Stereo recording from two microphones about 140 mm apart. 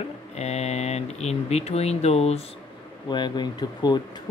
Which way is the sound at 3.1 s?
30° left (ahead or behind).